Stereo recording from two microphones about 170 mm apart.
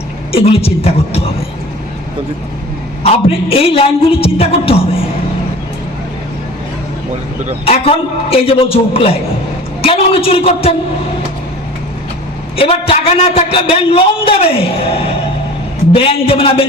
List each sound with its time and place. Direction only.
0.3 s a man's voice: 35° left (ahead or behind)
3.0 s a man's voice: 35° left (ahead or behind)
7.6 s a man's voice: 35° left (ahead or behind)
12.5 s a man's voice: 35° left (ahead or behind)